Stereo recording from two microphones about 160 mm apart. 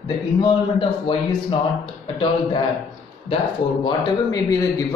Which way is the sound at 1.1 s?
30° left (ahead or behind).